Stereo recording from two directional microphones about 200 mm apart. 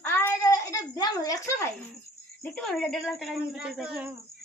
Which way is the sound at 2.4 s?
5° left (ahead or behind).